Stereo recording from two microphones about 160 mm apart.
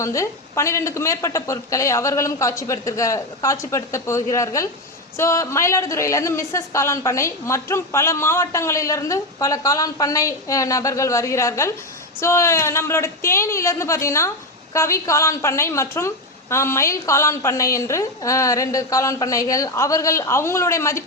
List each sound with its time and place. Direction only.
0.0 s a woman's voice: 20° left (ahead or behind)